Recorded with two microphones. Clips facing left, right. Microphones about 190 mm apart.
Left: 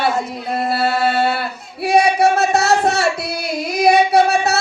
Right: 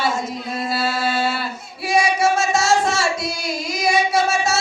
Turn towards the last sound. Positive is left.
turn(degrees=60)  # may be behind; listen again after turning